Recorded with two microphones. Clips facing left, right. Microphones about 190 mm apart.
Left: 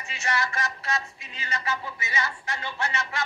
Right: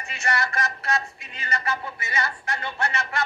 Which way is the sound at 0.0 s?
60° right (ahead or behind).